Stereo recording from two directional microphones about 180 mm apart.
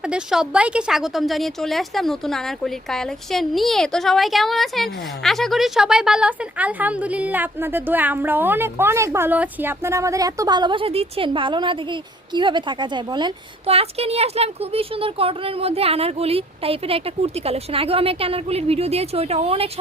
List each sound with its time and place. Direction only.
0.1 s a woman's voice: 5° right (ahead or behind); by 19.7 s 35° right (ahead or behind)